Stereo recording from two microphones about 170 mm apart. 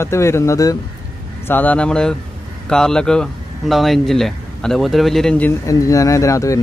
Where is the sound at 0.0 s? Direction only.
15° left (ahead or behind).